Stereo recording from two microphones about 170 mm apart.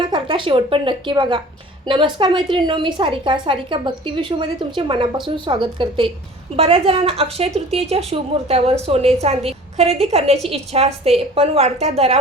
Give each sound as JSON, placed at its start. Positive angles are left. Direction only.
{"t": 0.0, "sound": "a woman's voice", "side_deg": -30}